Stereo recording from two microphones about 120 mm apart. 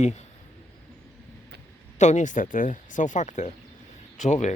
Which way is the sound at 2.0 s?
85° left.